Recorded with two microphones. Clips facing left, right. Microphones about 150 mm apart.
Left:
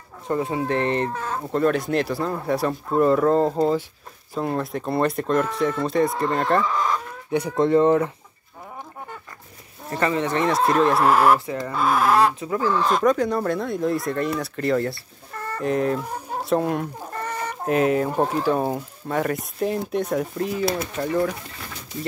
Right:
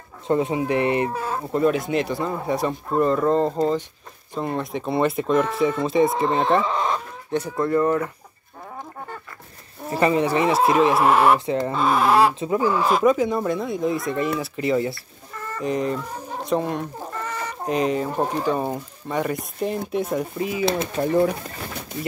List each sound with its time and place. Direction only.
0.3 s speech: 20° right (ahead or behind); by 6.2 s centre (ahead or behind)
6.6 s speech: 25° right (ahead or behind)
7.2 s speech: 15° left (ahead or behind)
9.8 s speech: 15° right (ahead or behind)
11.3 s speech: 25° right (ahead or behind)
11.7 s speech: centre (ahead or behind)
12.4 s speech: 20° right (ahead or behind); by 20.6 s 5° right (ahead or behind)
20.6 s speech: 25° right (ahead or behind)